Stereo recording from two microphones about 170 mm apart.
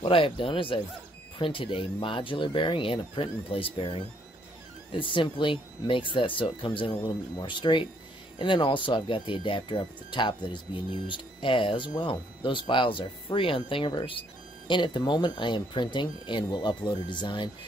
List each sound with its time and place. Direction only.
0.0 s speech: 30° left (ahead or behind)